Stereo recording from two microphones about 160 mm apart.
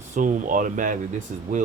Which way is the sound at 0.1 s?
55° right (ahead or behind).